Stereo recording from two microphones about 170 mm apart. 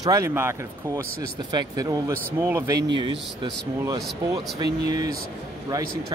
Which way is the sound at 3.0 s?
25° right (ahead or behind).